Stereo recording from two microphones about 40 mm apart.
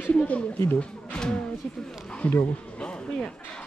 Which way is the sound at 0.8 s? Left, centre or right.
Left.